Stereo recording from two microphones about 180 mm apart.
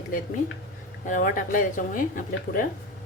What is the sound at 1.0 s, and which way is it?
Speech, 45° left (ahead or behind).